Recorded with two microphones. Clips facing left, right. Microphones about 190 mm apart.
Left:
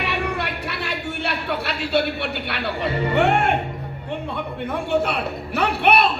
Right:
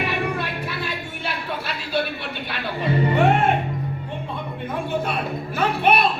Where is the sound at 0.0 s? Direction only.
70° left (ahead or behind).